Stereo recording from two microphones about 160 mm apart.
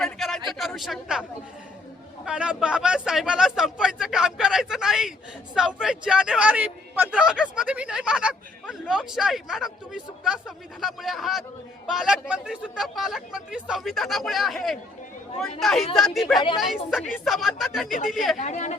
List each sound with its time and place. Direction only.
0.0 s a sound: centre (ahead or behind)
0.8 s speech: centre (ahead or behind)
2.2 s speech: 5° right (ahead or behind)
18.3 s a woman's voice: 45° left (ahead or behind)